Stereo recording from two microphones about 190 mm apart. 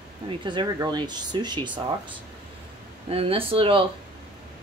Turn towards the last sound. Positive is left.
turn(degrees=-30)  # may be behind; listen again after turning